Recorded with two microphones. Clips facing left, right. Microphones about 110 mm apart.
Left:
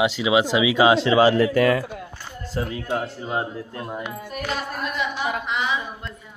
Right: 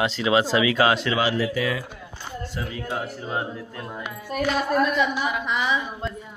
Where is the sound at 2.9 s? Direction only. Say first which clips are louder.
Left 3 dB; 20° left (ahead or behind).